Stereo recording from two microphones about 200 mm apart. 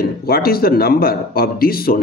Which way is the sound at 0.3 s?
50° left (ahead or behind).